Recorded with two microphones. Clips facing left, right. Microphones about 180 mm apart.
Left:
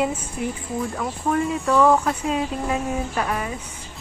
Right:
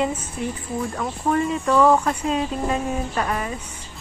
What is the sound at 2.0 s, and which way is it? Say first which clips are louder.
A woman's voice: right 1 dB; 10° left (ahead or behind).